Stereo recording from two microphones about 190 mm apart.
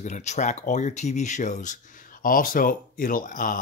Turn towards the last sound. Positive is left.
turn(degrees=45)  # may be behind; listen again after turning